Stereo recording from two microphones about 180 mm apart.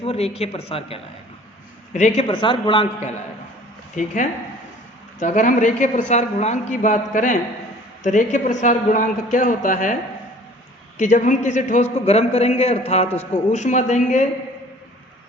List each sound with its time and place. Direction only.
0.0 s a man's voice: 35° left (ahead or behind)